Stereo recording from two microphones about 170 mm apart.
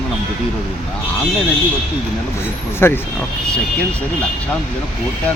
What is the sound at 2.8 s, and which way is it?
Speech, 15° left (ahead or behind).